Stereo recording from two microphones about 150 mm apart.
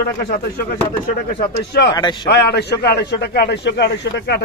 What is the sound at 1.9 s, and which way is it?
Speech, 30° left (ahead or behind).